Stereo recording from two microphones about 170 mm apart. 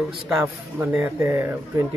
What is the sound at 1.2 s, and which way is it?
Speech, 15° right (ahead or behind).